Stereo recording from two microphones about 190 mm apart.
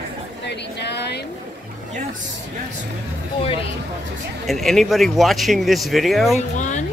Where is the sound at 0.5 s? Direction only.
60° left (ahead or behind).